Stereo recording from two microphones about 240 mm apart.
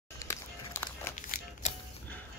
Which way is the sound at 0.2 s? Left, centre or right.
Centre.